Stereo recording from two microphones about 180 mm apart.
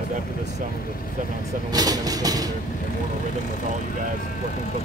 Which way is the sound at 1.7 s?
20° right (ahead or behind).